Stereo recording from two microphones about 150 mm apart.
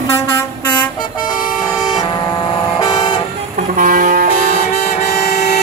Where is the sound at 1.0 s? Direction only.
65° left (ahead or behind).